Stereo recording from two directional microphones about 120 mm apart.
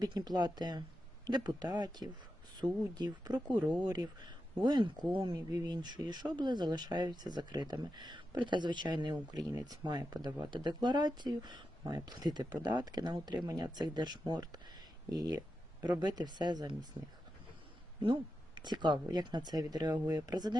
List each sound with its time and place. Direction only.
0.0 s speech: 35° right (ahead or behind)
3.6 s speech: 10° right (ahead or behind)
3.8 s speech: 35° right (ahead or behind)
18.0 s speech: 40° right (ahead or behind)